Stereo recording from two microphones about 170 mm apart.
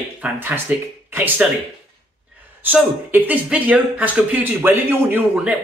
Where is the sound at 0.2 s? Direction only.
10° right (ahead or behind).